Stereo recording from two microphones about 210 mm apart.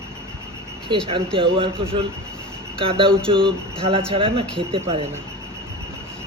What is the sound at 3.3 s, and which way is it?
A man's voice, 25° right (ahead or behind).